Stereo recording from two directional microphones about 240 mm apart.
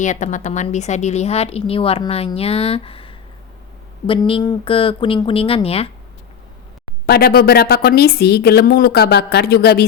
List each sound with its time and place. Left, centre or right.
0.0 s speech: left
7.1 s speech: left